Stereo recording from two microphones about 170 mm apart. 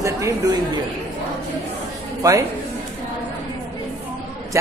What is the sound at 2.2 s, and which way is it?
Speech, 20° right (ahead or behind).